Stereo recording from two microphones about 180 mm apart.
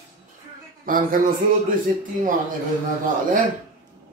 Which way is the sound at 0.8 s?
50° right (ahead or behind).